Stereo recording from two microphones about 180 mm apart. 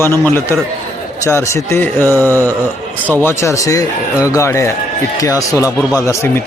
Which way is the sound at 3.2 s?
15° left (ahead or behind).